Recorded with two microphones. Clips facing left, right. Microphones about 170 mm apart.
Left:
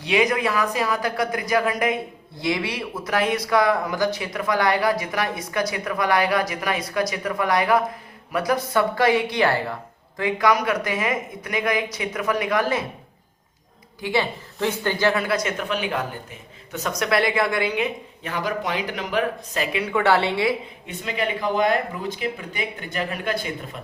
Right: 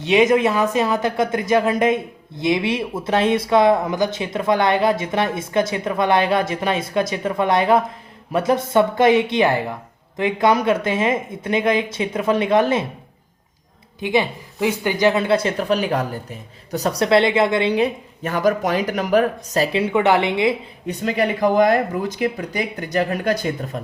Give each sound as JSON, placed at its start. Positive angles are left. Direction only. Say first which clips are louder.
{"t": 0.0, "sound": "speech", "louder": "right 6 dB", "side_deg": -25}
{"t": 14.0, "sound": "speech", "louder": "right 4 dB", "side_deg": -15}
{"t": 20.8, "sound": "speech", "louder": "right 7 dB", "side_deg": -40}